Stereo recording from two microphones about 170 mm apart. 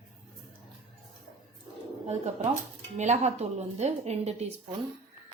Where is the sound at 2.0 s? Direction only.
40° right (ahead or behind).